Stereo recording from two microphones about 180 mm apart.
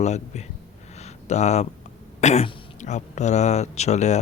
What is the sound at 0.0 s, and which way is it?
Speech, 40° left (ahead or behind).